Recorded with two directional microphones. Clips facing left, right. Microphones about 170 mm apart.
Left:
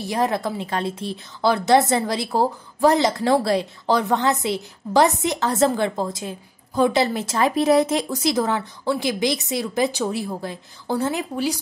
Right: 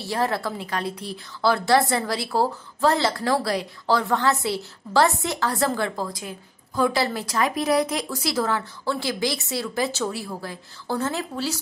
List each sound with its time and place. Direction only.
0.0 s a woman's voice: 15° left (ahead or behind)